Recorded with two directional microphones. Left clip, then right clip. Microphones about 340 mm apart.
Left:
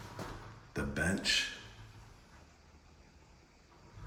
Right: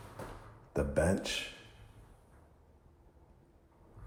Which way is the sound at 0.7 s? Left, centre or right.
Centre.